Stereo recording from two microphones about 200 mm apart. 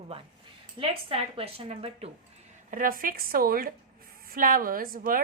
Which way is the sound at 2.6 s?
45° right (ahead or behind).